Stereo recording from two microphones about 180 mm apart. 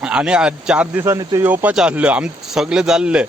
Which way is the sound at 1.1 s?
20° right (ahead or behind).